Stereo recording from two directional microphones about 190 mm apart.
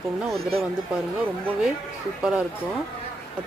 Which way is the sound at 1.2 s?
10° right (ahead or behind).